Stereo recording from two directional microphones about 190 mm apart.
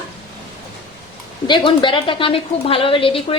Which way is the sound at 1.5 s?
25° left (ahead or behind).